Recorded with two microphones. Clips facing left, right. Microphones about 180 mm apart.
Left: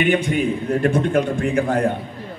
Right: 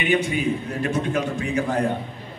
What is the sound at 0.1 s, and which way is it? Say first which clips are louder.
A man's voice: left 2 dB; 55° left (ahead or behind).